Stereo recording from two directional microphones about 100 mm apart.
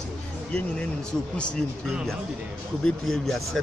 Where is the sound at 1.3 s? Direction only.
10° left (ahead or behind).